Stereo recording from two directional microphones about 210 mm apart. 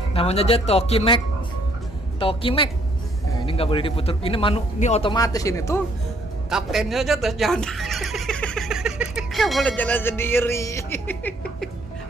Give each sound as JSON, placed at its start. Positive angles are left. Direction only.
{"t": 0.1, "sound": "speech", "side_deg": 30}
{"t": 5.1, "sound": "speech", "side_deg": 15}
{"t": 6.5, "sound": "speech", "side_deg": 0}